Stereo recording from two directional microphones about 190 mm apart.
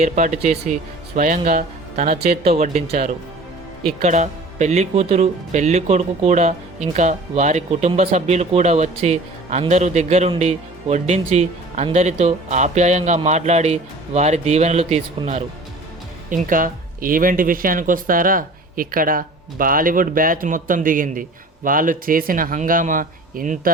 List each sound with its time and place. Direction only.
0.0 s speech: 40° right (ahead or behind)
16.3 s speech: 45° right (ahead or behind)